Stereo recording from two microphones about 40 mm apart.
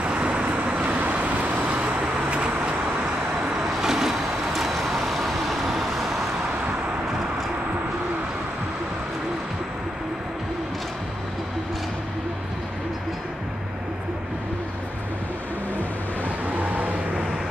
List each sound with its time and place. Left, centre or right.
0.0 s vehicle: right
0.8 s vehicle: right
2.3 s vehicle: right
3.4 s vehicle: centre
16.5 s vehicle: right